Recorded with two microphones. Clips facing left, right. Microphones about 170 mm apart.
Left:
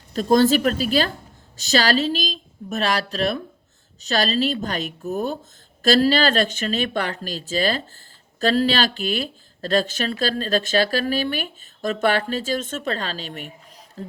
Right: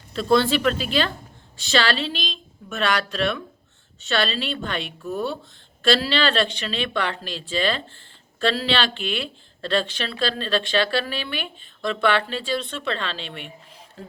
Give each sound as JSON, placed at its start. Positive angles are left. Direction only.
{"t": 0.1, "sound": "speech", "side_deg": 40}